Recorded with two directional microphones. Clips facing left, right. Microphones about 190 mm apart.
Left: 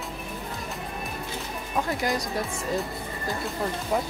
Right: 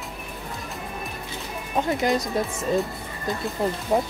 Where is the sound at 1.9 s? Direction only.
20° right (ahead or behind).